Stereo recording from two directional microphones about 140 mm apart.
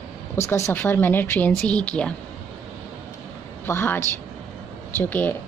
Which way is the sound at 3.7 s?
20° left (ahead or behind).